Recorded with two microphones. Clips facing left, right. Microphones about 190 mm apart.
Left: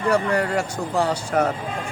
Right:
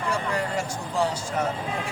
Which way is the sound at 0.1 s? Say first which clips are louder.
Left 8 dB; 65° left (ahead or behind).